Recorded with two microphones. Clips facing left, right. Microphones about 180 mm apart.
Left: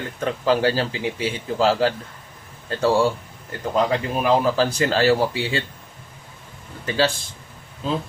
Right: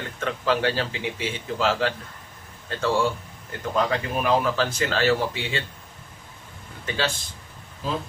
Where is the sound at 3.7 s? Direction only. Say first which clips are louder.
Left 3 dB; 35° left (ahead or behind).